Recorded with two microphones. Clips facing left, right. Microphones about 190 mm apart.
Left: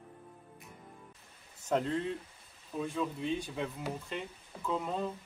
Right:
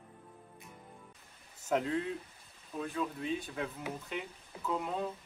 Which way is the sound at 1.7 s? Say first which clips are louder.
Left 1 dB; 5° right (ahead or behind).